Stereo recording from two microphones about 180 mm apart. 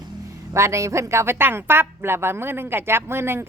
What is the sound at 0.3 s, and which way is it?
Speech, 15° right (ahead or behind).